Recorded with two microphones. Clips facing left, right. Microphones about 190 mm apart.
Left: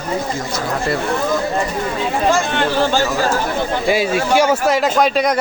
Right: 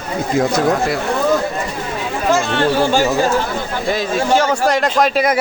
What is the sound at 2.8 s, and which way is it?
Speech, 10° right (ahead or behind).